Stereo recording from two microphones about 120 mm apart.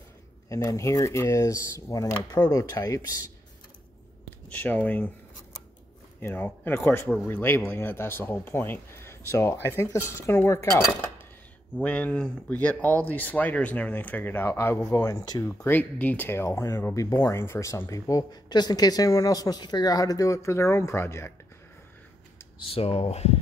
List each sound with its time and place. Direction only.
0.5 s speech: 25° left (ahead or behind)
4.5 s speech: 15° left (ahead or behind)
6.2 s speech: 15° left (ahead or behind)
11.7 s speech: 10° left (ahead or behind)
14.9 s speech: 30° left (ahead or behind)
15.4 s speech: 20° left (ahead or behind)
22.7 s speech: 55° left (ahead or behind)